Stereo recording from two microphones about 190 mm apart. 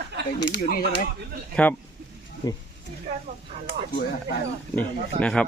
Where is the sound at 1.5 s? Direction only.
10° left (ahead or behind).